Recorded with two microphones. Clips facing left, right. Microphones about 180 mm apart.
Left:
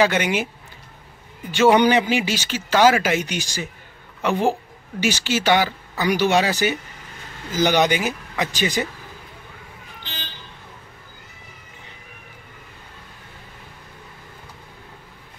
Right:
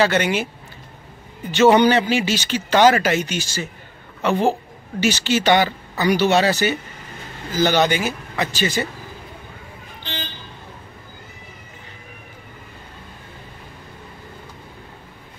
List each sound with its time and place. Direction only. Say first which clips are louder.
0.0 s speech: right 1 dB; 15° left (ahead or behind)
1.5 s speech: right 2 dB; 10° left (ahead or behind)